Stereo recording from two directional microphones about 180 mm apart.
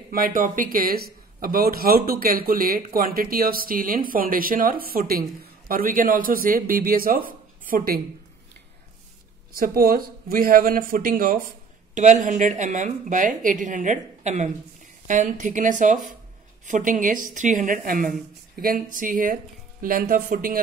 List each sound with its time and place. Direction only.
0.1 s speech: 50° right (ahead or behind)
9.5 s speech: 55° right (ahead or behind)